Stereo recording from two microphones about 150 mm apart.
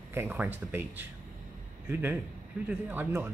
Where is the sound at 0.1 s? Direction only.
15° right (ahead or behind).